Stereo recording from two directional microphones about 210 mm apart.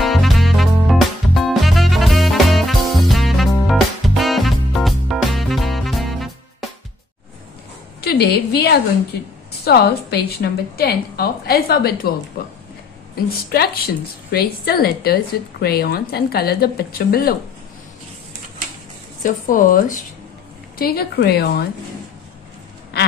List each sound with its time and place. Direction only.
0.0 s music: centre (ahead or behind)
8.0 s a woman's voice: 50° left (ahead or behind)
13.1 s a woman's voice: 45° left (ahead or behind)
19.2 s a woman's voice: 40° left (ahead or behind)